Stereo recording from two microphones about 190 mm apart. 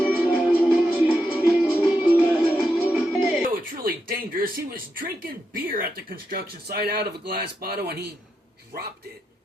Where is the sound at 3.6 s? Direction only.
50° right (ahead or behind).